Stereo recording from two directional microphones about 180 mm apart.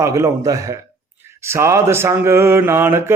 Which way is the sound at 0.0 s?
15° right (ahead or behind).